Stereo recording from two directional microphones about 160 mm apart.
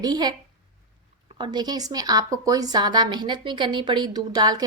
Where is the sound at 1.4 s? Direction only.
25° right (ahead or behind).